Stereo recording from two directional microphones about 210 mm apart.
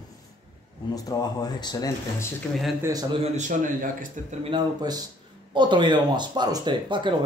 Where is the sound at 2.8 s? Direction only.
15° right (ahead or behind).